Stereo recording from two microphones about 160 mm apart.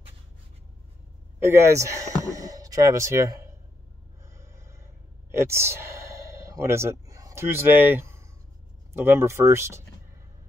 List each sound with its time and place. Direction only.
1.4 s speech: 15° right (ahead or behind)
4.2 s a sound: 20° right (ahead or behind)
5.3 s speech: 15° right (ahead or behind)